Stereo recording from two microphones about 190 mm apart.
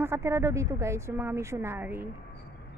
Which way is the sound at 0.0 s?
15° right (ahead or behind).